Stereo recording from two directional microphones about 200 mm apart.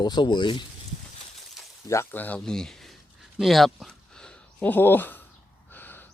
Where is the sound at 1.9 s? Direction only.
10° left (ahead or behind).